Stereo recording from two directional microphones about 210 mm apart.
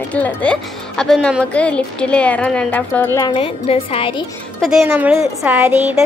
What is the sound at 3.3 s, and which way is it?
Speech, 25° left (ahead or behind).